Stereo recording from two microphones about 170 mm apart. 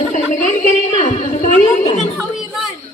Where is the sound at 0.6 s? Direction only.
50° left (ahead or behind).